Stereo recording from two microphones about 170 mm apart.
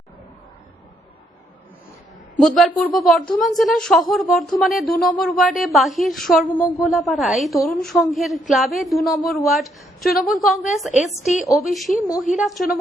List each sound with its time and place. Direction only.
2.4 s a woman's voice: centre (ahead or behind)
10.9 s a woman's voice: 40° left (ahead or behind)
11.5 s a woman's voice: centre (ahead or behind)